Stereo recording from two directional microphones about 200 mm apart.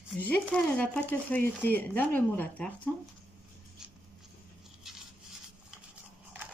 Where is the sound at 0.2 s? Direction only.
5° left (ahead or behind).